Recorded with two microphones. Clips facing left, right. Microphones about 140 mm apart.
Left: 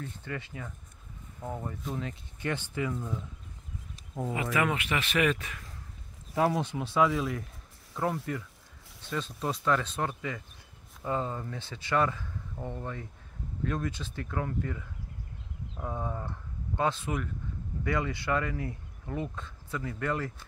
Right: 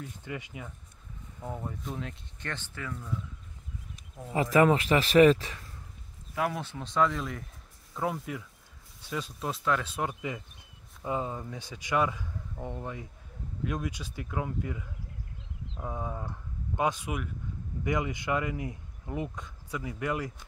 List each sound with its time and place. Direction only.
0.0 s speech: 15° right (ahead or behind)
1.4 s speech: centre (ahead or behind)
2.5 s speech: 15° left (ahead or behind)
4.3 s speech: 35° right (ahead or behind)
6.5 s speech: 15° left (ahead or behind)
8.3 s speech: 5° right (ahead or behind)